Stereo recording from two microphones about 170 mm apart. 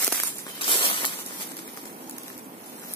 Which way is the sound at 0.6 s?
30° left (ahead or behind).